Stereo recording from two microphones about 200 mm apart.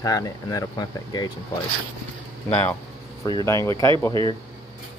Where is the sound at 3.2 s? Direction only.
15° left (ahead or behind).